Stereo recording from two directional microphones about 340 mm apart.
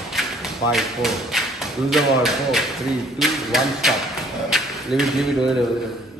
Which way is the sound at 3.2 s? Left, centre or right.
Centre.